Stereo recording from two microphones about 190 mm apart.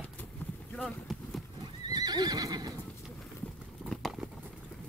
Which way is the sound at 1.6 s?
20° right (ahead or behind).